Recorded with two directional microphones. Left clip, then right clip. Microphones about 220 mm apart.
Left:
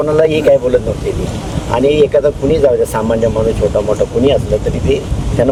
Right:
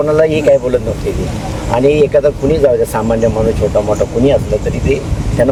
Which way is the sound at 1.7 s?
Centre (ahead or behind).